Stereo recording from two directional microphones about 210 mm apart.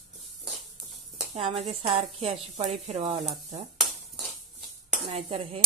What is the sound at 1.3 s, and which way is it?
A woman's voice, 30° right (ahead or behind).